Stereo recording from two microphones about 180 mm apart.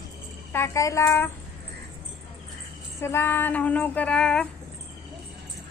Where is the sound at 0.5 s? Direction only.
15° left (ahead or behind).